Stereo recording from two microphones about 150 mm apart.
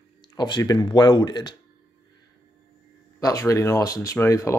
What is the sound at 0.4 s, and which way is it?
Speech, 30° left (ahead or behind).